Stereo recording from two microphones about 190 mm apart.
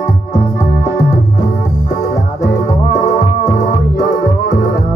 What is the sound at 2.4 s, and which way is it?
Music, 35° left (ahead or behind).